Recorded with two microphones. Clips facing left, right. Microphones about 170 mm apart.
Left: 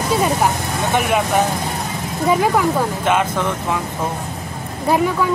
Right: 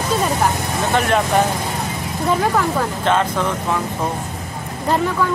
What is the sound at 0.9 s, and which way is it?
Speech, 10° left (ahead or behind).